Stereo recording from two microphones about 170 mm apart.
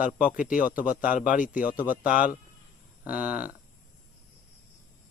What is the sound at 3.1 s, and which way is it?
Speech, 10° right (ahead or behind).